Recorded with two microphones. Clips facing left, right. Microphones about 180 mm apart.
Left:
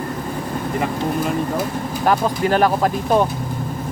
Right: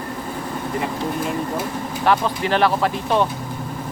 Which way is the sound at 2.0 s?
40° left (ahead or behind).